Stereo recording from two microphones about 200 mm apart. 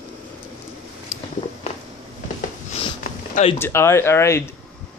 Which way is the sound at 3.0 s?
40° left (ahead or behind).